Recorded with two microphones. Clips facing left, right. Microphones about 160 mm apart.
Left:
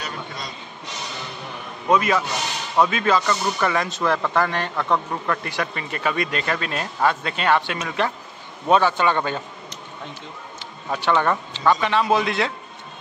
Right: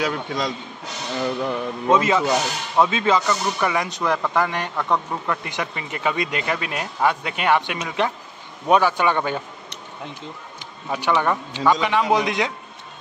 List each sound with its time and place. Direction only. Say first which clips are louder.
0.0 s speech: right 9 dB; 90° right
1.2 s music: right 12 dB; 75° right (ahead or behind)
1.9 s speech: right 2 dB; 25° right (ahead or behind)
10.9 s speech: even; 15° right (ahead or behind)